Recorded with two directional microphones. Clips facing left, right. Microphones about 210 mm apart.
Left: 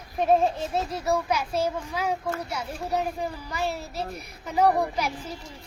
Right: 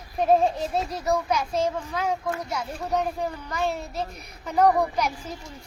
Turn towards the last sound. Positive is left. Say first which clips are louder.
# right 2 dB
turn(degrees=10)  # may be behind; listen again after turning